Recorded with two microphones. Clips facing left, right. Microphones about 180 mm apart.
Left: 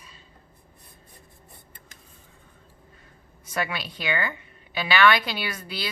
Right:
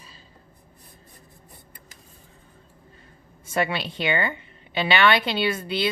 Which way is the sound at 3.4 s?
25° right (ahead or behind).